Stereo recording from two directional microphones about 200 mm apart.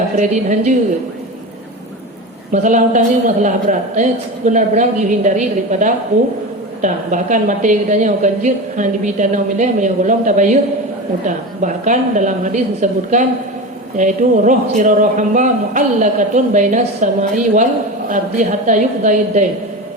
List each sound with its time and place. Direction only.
0.2 s a woman's voice: 35° right (ahead or behind)
2.5 s a woman's voice: 40° right (ahead or behind)